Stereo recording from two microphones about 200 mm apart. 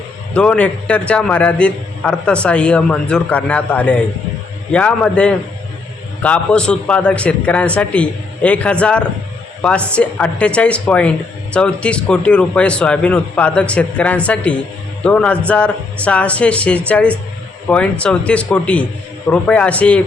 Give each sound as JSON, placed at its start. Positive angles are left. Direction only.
{"t": 0.3, "sound": "a man's voice", "side_deg": 5}